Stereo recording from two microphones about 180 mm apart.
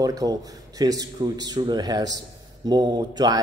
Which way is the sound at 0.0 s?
20° right (ahead or behind).